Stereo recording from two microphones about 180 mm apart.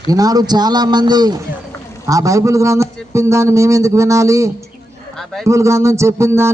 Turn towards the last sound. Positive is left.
turn(degrees=-15)  # may be behind; listen again after turning